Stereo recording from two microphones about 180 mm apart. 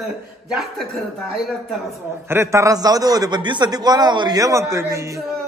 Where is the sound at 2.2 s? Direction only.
15° right (ahead or behind).